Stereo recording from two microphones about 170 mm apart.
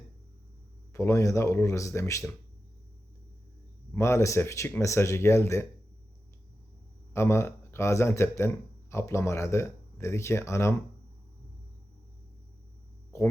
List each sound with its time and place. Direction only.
0.9 s speech: 20° left (ahead or behind)
3.9 s speech: 15° left (ahead or behind)
7.1 s speech: 15° left (ahead or behind)